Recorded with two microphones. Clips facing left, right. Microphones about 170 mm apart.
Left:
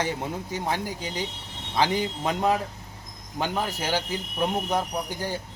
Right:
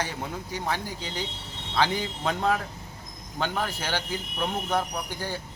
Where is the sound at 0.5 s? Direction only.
20° left (ahead or behind).